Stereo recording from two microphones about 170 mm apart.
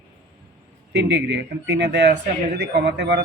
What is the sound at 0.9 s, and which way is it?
Speech, 90° right.